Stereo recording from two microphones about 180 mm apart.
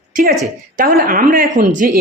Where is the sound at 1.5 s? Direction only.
45° right (ahead or behind).